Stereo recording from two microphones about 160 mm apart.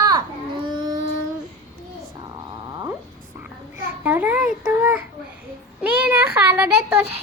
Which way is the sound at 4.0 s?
10° right (ahead or behind).